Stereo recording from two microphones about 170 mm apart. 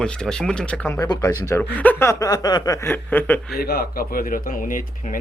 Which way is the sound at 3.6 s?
65° left (ahead or behind).